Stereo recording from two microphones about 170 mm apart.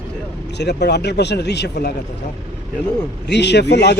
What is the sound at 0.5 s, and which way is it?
Speech, 80° left.